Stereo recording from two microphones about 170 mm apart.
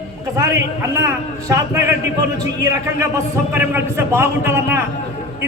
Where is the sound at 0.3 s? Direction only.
15° right (ahead or behind).